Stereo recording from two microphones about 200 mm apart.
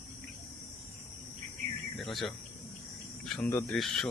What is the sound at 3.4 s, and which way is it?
Speech, 10° left (ahead or behind).